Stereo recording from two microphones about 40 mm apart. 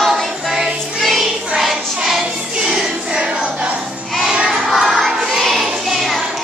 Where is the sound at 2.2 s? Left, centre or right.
Right.